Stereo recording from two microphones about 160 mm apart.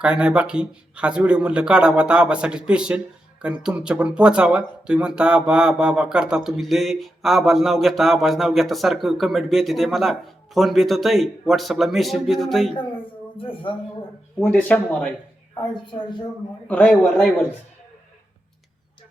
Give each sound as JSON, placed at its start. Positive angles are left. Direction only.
{"t": 0.0, "sound": "speech", "side_deg": -5}
{"t": 13.3, "sound": "speech", "side_deg": 35}
{"t": 14.3, "sound": "speech", "side_deg": 5}
{"t": 15.7, "sound": "a woman's voice", "side_deg": 30}
{"t": 16.6, "sound": "speech", "side_deg": 10}